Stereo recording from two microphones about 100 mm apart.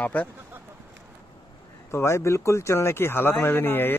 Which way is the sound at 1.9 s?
25° left (ahead or behind).